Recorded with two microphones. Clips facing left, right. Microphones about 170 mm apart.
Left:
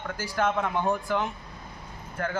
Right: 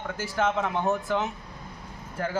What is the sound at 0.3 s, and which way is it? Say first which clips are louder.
Speech: even; centre (ahead or behind).